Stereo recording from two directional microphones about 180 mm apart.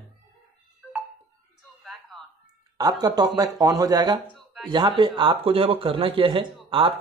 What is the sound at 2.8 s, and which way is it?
Speech, 20° right (ahead or behind).